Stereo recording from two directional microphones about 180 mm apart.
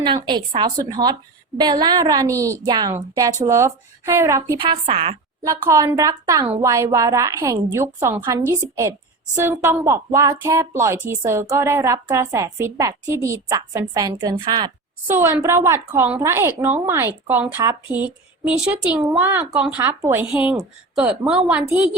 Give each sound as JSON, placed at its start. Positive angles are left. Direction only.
{"t": 0.3, "sound": "a woman's voice", "side_deg": -25}
{"t": 4.5, "sound": "a woman's voice", "side_deg": -25}
{"t": 5.4, "sound": "a woman's voice", "side_deg": -15}
{"t": 15.0, "sound": "a woman's voice", "side_deg": -15}